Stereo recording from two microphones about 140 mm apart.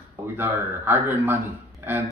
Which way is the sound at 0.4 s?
15° right (ahead or behind).